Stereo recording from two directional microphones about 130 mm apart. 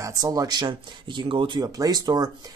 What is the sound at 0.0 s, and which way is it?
Speech, 25° right (ahead or behind).